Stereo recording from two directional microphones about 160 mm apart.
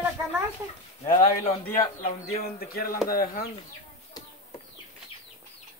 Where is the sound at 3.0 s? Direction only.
65° left (ahead or behind).